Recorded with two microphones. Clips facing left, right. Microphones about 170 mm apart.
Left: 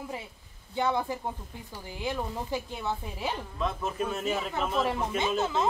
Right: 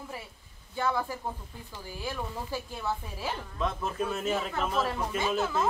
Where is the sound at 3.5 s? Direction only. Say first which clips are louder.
Right 2 dB; centre (ahead or behind).